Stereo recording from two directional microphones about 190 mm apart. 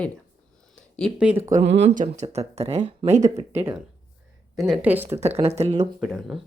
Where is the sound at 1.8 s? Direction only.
40° right (ahead or behind).